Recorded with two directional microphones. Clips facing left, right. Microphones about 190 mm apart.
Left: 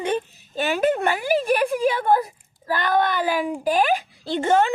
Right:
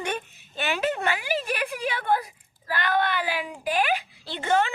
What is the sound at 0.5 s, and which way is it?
A child's voice, 45° left (ahead or behind).